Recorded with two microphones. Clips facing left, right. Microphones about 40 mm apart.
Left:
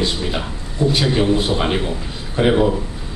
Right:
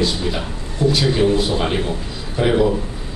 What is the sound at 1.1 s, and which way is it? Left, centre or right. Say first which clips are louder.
A man's voice: even; centre.